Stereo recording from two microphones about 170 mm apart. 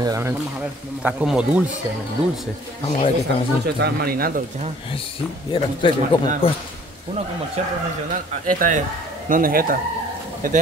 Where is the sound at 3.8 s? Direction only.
65° right (ahead or behind).